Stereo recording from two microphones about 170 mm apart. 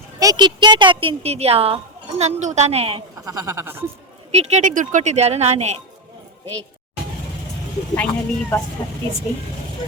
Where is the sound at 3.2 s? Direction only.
15° right (ahead or behind).